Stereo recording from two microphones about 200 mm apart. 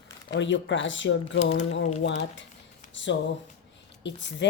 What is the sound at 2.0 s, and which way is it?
Speech, 60° left (ahead or behind).